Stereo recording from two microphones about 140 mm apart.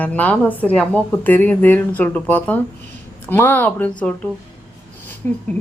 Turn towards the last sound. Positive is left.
turn(degrees=15)  # may be behind; listen again after turning